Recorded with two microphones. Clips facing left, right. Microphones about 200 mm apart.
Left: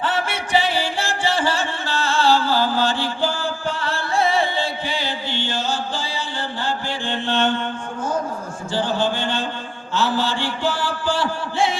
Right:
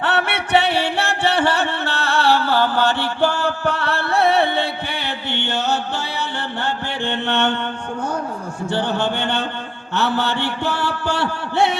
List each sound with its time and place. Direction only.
0.0 s music: 65° right (ahead or behind)
8.7 s mantra: 65° right (ahead or behind)